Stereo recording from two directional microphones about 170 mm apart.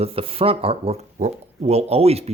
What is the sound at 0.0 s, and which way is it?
Speech, 35° right (ahead or behind).